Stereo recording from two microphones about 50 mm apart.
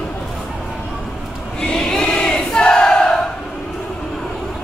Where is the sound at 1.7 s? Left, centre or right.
Centre.